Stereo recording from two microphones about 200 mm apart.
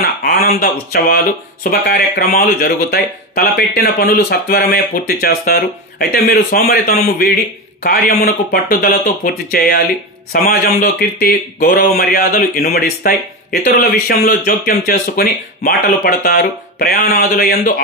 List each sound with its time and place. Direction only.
0.0 s speech: 50° left (ahead or behind)